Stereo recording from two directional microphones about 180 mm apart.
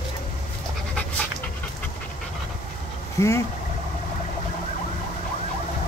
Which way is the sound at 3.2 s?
15° left (ahead or behind).